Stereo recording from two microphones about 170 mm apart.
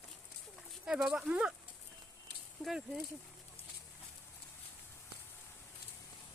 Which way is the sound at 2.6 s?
5° right (ahead or behind).